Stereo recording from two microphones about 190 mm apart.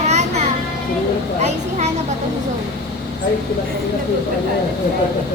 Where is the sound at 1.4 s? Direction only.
35° right (ahead or behind).